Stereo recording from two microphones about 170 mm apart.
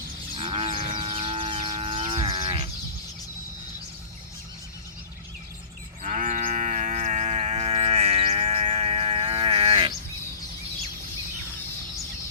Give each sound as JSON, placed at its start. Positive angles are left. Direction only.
{"t": 0.3, "sound": "livestock", "side_deg": -35}
{"t": 6.0, "sound": "cattle", "side_deg": -45}